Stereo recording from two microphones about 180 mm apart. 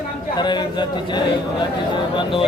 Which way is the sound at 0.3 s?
25° left (ahead or behind).